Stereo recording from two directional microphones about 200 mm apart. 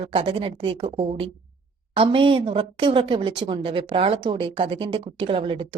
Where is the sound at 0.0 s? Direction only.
25° right (ahead or behind).